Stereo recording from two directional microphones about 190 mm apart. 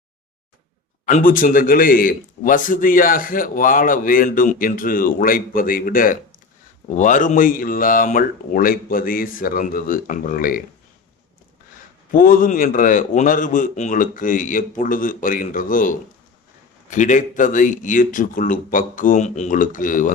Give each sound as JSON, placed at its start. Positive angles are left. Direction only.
{"t": 1.0, "sound": "a man's voice", "side_deg": 50}
{"t": 12.1, "sound": "a man's voice", "side_deg": 45}